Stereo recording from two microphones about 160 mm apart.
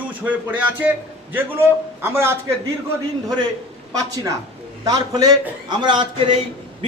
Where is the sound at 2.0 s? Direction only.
15° right (ahead or behind).